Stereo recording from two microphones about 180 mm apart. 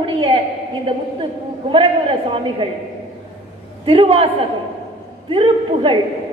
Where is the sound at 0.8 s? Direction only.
30° right (ahead or behind).